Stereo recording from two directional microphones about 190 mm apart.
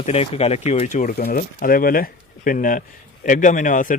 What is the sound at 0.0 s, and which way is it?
Speech, 30° left (ahead or behind).